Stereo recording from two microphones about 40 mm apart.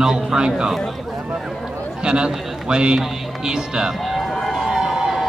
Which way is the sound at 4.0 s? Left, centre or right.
Centre.